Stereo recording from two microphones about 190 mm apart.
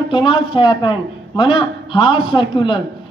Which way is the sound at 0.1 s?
25° left (ahead or behind).